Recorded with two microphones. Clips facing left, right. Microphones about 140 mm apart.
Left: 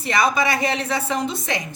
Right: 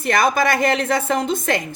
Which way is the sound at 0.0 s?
55° right (ahead or behind).